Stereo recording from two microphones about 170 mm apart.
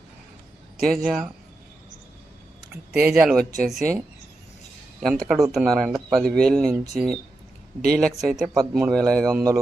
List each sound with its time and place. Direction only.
0.8 s speech: centre (ahead or behind)
2.9 s speech: 5° right (ahead or behind)
5.0 s speech: centre (ahead or behind)
9.3 s speech: 20° right (ahead or behind)